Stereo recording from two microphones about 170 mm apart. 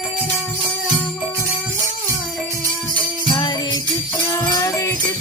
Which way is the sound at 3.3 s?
25° left (ahead or behind).